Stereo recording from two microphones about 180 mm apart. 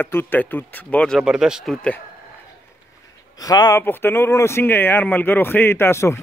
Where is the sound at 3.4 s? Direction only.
20° left (ahead or behind).